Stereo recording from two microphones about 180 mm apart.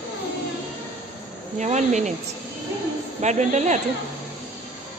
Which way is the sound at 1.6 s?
40° right (ahead or behind).